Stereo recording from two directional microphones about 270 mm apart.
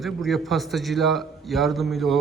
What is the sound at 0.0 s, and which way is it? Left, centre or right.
A man's voice, centre.